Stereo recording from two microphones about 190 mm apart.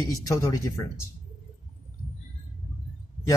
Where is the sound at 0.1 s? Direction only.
15° left (ahead or behind).